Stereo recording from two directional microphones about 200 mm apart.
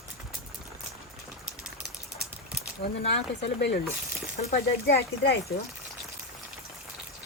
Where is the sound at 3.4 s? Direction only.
60° left (ahead or behind).